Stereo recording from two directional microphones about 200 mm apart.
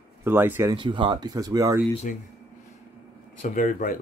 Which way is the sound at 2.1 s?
40° left (ahead or behind).